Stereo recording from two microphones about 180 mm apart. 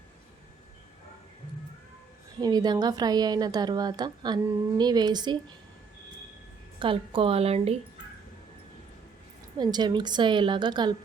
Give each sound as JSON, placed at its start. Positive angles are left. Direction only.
{"t": 2.4, "sound": "a woman's voice", "side_deg": -20}
{"t": 6.7, "sound": "a woman's voice", "side_deg": -30}
{"t": 9.6, "sound": "a woman's voice", "side_deg": -25}